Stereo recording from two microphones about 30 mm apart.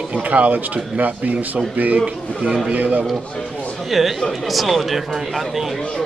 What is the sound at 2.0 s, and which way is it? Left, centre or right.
Speech, right.